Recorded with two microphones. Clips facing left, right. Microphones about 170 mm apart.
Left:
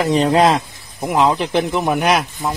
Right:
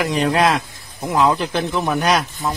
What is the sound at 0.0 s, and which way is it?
Speech, 25° left (ahead or behind).